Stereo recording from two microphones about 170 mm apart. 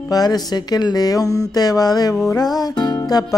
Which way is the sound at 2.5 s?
25° left (ahead or behind).